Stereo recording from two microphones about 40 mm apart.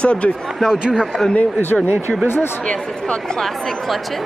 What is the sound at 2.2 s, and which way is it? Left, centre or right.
Speech, left.